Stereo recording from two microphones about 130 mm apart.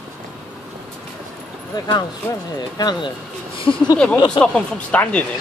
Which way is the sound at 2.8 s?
35° left (ahead or behind).